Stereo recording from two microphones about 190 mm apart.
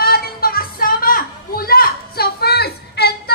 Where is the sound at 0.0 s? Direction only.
50° left (ahead or behind).